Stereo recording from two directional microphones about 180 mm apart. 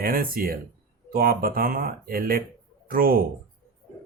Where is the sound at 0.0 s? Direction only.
50° right (ahead or behind).